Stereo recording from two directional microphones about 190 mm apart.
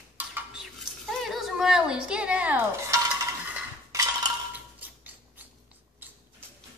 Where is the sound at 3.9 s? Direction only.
15° right (ahead or behind).